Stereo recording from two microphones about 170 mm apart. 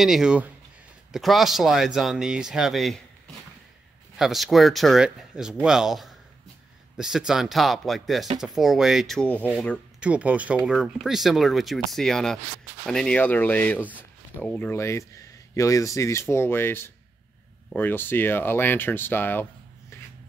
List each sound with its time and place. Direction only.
0.0 s speech: 5° right (ahead or behind)
4.2 s speech: centre (ahead or behind)
9.9 s speech: 5° right (ahead or behind); by 13.7 s 10° left (ahead or behind)
13.7 s speech: 10° right (ahead or behind)
14.4 s speech: 10° left (ahead or behind)
19.9 s a sound: 15° left (ahead or behind)